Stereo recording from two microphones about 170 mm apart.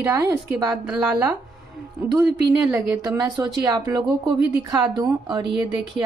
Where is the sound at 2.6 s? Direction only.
15° right (ahead or behind).